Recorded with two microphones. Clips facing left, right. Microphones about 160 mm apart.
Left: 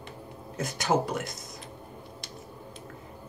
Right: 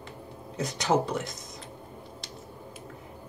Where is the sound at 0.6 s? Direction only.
20° right (ahead or behind).